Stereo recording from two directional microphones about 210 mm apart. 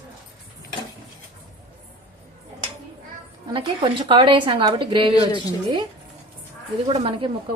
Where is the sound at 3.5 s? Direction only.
25° right (ahead or behind).